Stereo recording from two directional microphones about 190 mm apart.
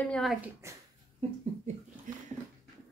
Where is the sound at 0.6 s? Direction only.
15° right (ahead or behind).